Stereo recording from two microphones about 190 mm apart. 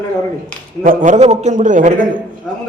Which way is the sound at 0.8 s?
40° right (ahead or behind).